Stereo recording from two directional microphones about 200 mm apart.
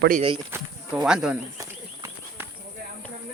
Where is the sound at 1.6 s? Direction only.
15° right (ahead or behind).